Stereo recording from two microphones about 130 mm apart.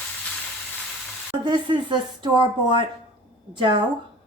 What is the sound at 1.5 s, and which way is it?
A woman's voice, 35° right (ahead or behind).